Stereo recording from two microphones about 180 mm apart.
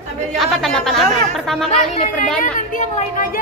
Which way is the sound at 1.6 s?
40° left (ahead or behind).